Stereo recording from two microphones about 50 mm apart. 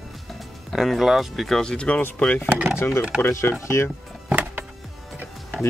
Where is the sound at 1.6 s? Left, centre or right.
Centre.